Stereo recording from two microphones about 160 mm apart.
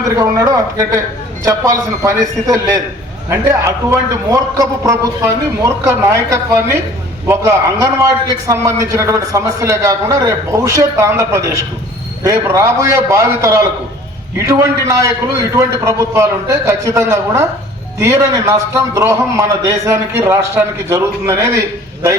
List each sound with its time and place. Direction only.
0.1 s a man's voice: 20° right (ahead or behind)
7.9 s a man's voice: 20° right (ahead or behind)